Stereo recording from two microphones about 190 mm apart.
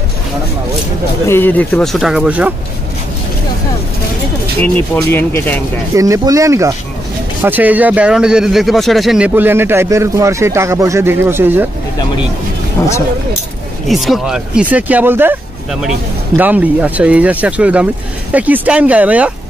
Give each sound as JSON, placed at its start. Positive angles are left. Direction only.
{"t": 1.2, "sound": "speech", "side_deg": 10}
{"t": 4.9, "sound": "speech", "side_deg": 10}
{"t": 5.9, "sound": "speech", "side_deg": -15}
{"t": 12.8, "sound": "speech", "side_deg": 15}
{"t": 13.8, "sound": "speech", "side_deg": 0}